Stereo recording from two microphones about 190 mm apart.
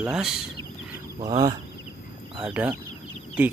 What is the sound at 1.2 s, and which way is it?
Speech, 20° right (ahead or behind).